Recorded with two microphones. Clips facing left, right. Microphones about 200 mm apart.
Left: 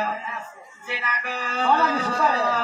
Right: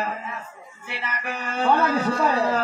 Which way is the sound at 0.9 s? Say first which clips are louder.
Even; 55° right (ahead or behind).